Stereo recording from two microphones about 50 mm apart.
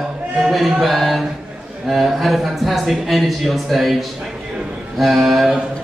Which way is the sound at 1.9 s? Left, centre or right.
Centre.